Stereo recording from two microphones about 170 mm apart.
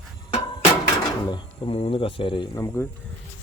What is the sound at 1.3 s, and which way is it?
Speech, 30° left (ahead or behind).